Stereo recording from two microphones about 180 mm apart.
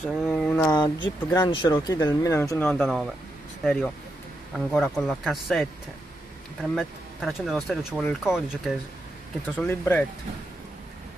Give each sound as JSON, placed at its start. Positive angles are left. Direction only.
{"t": 0.0, "sound": "speech", "side_deg": 0}
{"t": 0.7, "sound": "speech", "side_deg": 20}
{"t": 9.6, "sound": "speech", "side_deg": 10}